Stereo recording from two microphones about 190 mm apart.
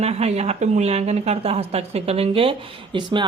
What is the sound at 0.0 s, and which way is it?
Speech, 35° right (ahead or behind).